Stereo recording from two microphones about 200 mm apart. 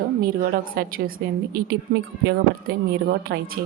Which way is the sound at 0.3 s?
45° right (ahead or behind).